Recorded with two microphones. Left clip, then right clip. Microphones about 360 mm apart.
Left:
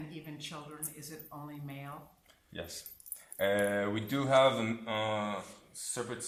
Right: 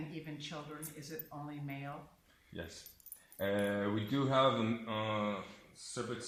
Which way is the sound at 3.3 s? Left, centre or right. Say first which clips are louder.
Left 5 dB; left.